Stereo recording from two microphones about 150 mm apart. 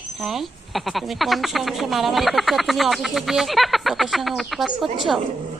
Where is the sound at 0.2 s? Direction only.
Centre (ahead or behind).